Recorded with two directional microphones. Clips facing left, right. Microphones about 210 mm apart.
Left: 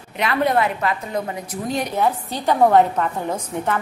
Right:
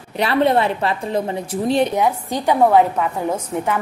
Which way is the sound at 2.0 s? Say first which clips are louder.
Right 2 dB; 15° right (ahead or behind).